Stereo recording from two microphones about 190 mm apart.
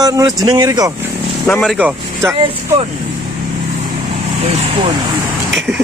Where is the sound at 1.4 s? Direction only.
10° left (ahead or behind).